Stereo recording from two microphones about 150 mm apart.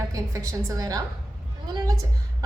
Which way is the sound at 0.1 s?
20° right (ahead or behind).